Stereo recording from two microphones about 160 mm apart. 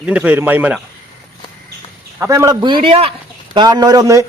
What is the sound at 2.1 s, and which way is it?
Speech, 20° right (ahead or behind).